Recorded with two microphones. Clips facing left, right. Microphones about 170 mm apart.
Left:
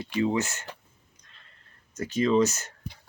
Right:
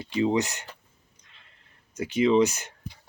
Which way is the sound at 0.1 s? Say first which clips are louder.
Right 2 dB; 20° right (ahead or behind).